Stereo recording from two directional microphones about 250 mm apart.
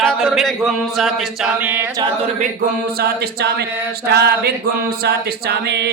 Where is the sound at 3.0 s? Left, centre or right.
Right.